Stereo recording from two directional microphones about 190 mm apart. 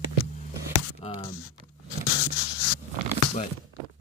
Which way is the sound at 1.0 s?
25° left (ahead or behind).